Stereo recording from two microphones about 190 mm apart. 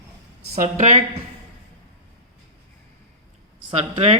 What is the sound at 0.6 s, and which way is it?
Speech, 40° right (ahead or behind).